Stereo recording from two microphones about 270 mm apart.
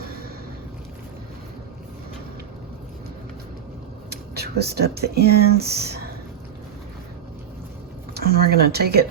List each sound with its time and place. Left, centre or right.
4.1 s speech: right
8.1 s speech: right